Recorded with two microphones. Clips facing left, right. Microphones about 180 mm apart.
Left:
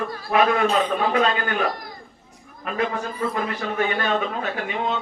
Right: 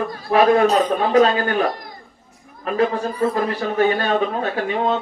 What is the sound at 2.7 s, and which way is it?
A man's voice, 35° right (ahead or behind).